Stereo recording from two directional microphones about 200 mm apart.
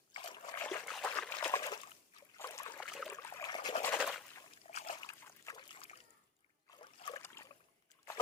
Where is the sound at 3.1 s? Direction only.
15° left (ahead or behind).